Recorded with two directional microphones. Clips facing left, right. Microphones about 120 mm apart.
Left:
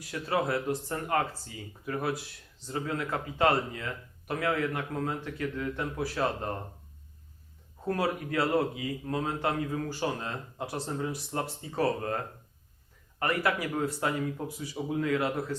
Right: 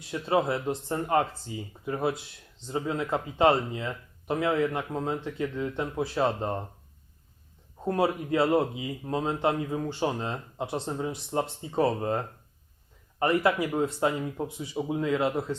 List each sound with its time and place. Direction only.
0.0 s speech: 25° right (ahead or behind)
7.9 s speech: 25° right (ahead or behind)